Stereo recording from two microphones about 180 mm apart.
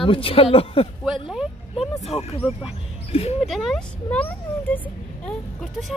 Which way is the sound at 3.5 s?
Centre (ahead or behind).